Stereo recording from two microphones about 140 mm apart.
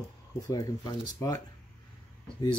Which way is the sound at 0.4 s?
25° left (ahead or behind).